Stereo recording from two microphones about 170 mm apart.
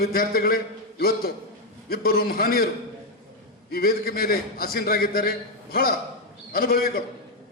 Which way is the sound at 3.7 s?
60° left (ahead or behind).